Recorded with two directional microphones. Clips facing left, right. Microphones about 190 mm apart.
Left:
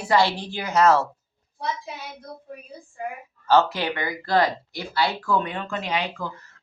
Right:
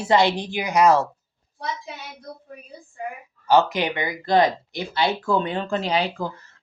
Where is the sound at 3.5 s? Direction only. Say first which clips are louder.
Right 1 dB; 15° right (ahead or behind); by 6.3 s 35° right (ahead or behind).